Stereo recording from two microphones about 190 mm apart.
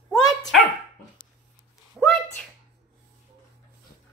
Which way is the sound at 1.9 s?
5° left (ahead or behind).